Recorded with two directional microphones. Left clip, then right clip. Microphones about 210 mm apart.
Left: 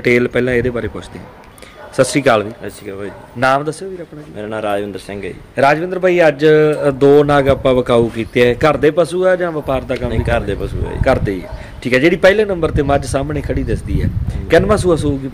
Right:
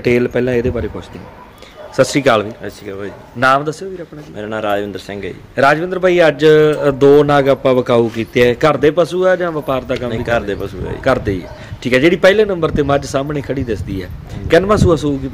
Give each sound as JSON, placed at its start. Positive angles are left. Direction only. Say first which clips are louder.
{"t": 0.0, "sound": "a man's voice", "louder": "left 1 dB", "side_deg": -5}